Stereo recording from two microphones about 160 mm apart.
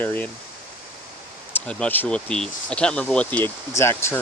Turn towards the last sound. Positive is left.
turn(degrees=15)  # may be behind; listen again after turning